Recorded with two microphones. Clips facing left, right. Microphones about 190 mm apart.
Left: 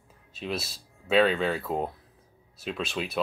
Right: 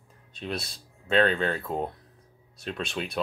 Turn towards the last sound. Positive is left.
turn(degrees=0)  # may be behind; listen again after turning